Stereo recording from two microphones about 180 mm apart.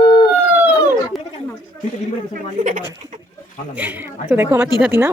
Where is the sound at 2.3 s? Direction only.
45° right (ahead or behind).